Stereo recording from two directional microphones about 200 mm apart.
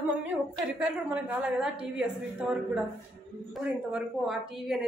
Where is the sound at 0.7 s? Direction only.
5° right (ahead or behind).